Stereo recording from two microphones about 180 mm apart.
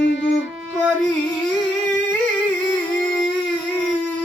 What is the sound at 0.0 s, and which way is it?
Music, 80° left.